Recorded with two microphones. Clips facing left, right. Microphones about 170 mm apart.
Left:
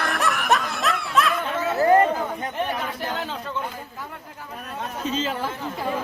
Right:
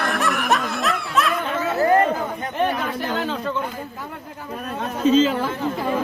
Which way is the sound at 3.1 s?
90° right.